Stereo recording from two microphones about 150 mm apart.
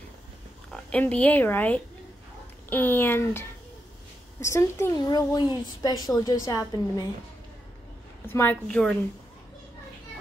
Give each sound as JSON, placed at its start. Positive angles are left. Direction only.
{"t": 0.7, "sound": "a woman's voice", "side_deg": 10}
{"t": 8.3, "sound": "speech", "side_deg": 15}